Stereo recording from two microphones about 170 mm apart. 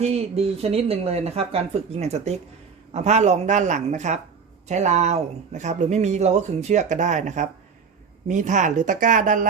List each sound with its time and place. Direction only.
0.0 s speech: 35° right (ahead or behind)